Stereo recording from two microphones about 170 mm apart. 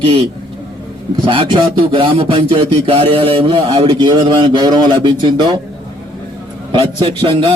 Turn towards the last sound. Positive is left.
turn(degrees=-30)  # may be behind; listen again after turning